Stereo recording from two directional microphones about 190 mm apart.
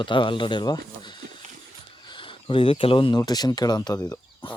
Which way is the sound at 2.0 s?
25° left (ahead or behind).